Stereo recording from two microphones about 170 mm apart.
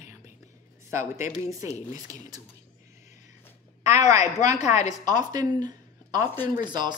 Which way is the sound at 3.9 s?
20° right (ahead or behind).